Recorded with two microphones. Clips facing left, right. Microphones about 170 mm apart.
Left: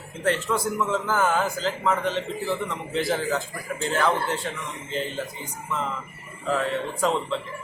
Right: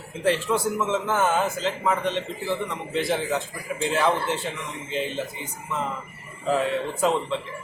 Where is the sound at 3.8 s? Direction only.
10° right (ahead or behind).